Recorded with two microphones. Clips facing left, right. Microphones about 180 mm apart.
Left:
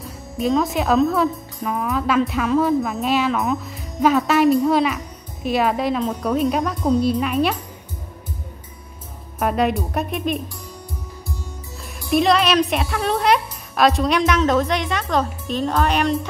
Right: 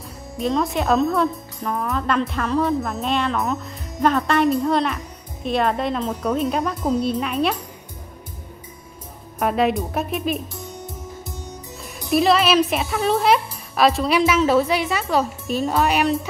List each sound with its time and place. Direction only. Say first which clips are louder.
0.0 s speech: left 2 dB; centre (ahead or behind)
9.4 s speech: even; centre (ahead or behind)
10.5 s music: right 3 dB; 20° right (ahead or behind)
12.1 s speech: even; centre (ahead or behind)